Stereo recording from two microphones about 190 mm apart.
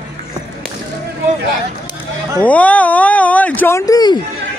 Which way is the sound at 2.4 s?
10° left (ahead or behind).